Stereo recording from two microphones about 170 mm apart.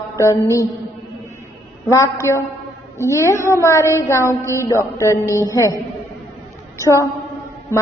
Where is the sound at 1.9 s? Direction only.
15° left (ahead or behind).